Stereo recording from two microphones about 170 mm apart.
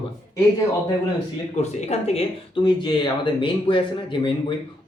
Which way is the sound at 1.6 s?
40° left (ahead or behind).